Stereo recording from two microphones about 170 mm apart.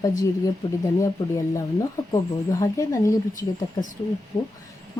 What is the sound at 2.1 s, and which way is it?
Speech, 20° left (ahead or behind).